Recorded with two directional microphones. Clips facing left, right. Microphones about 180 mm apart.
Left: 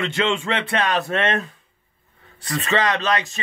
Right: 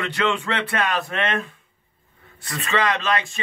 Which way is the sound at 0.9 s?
40° left (ahead or behind).